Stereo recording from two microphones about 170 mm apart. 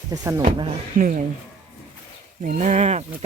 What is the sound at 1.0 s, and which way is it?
Speech, 50° right (ahead or behind).